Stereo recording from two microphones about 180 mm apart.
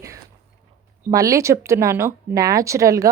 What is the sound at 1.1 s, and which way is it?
A woman's voice, 15° right (ahead or behind).